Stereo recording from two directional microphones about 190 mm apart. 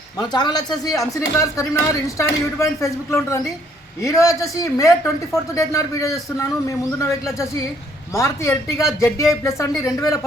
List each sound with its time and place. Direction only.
0.2 s speech: 20° left (ahead or behind)